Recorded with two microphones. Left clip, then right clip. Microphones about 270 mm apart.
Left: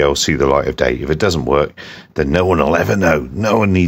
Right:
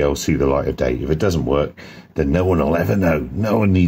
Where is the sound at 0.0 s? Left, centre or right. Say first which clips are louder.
Left 4 dB; left.